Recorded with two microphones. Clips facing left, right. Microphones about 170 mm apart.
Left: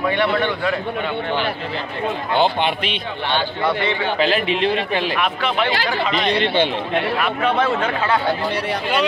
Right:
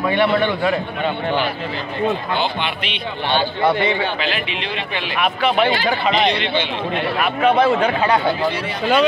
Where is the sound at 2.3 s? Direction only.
50° left (ahead or behind).